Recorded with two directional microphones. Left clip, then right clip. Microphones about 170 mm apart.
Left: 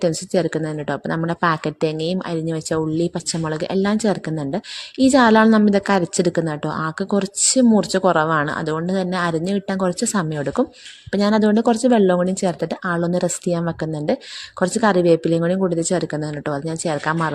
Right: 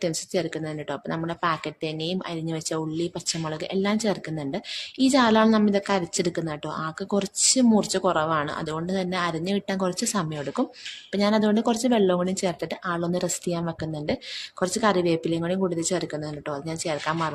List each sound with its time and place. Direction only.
0.0 s a woman's voice: 40° left (ahead or behind)